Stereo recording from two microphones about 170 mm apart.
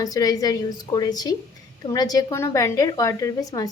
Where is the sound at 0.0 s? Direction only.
20° left (ahead or behind).